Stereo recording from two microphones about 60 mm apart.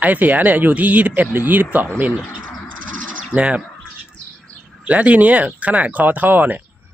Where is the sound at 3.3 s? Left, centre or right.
Right.